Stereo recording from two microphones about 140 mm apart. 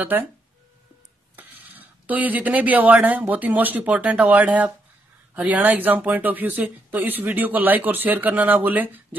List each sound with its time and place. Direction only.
0.1 s speech: 15° right (ahead or behind)
1.3 s speech: 10° right (ahead or behind)